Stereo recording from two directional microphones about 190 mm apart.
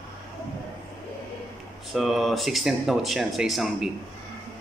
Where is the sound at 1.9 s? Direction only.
Centre (ahead or behind).